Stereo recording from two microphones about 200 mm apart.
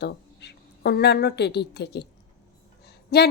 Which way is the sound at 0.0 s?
55° left (ahead or behind).